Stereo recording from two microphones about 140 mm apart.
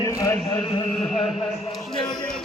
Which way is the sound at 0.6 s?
35° left (ahead or behind).